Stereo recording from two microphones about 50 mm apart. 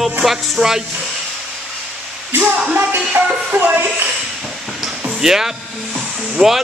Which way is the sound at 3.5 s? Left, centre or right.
Right.